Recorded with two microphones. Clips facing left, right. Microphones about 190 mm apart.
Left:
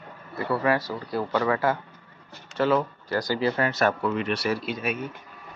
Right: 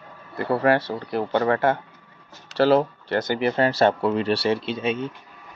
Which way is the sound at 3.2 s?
20° right (ahead or behind).